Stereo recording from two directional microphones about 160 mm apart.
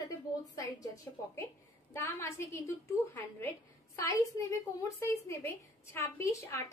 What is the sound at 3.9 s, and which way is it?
A woman's voice, 20° left (ahead or behind).